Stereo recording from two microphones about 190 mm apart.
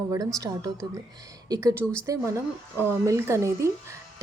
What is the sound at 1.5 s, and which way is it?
A woman's voice, 20° right (ahead or behind).